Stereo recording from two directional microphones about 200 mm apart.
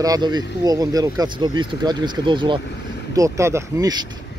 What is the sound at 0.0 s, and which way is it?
Speech, 20° right (ahead or behind).